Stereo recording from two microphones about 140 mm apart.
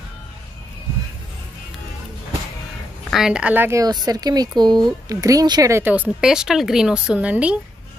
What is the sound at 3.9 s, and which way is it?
Speech, 30° right (ahead or behind).